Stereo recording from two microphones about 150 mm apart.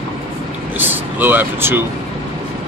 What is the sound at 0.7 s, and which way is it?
Speech, 15° right (ahead or behind).